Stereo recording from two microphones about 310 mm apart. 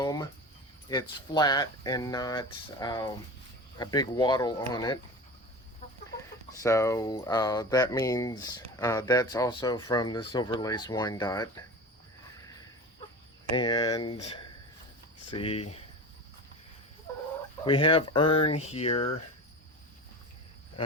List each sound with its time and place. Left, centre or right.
0.0 s speech: centre
6.6 s speech: centre
13.5 s speech: centre
15.4 s speech: centre
17.1 s a sound: centre
17.7 s speech: centre